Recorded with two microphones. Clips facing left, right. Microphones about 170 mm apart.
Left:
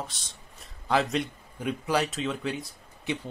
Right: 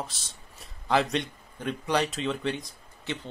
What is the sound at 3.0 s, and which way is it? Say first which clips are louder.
Speech: left 3 dB; 15° left (ahead or behind).